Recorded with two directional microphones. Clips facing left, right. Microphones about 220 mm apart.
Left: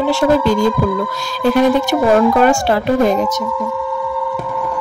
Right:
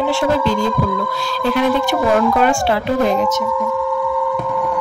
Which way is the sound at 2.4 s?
45° left (ahead or behind).